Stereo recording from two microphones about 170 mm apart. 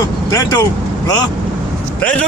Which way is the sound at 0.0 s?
20° left (ahead or behind).